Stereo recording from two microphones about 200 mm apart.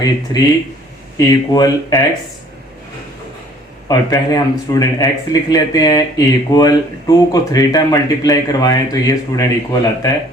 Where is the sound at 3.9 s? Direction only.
20° left (ahead or behind).